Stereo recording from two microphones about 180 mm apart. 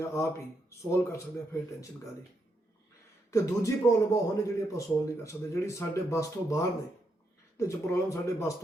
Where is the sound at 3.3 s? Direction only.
15° left (ahead or behind).